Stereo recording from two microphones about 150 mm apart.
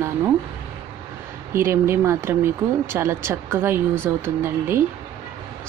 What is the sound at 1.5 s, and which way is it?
Speech, 15° right (ahead or behind).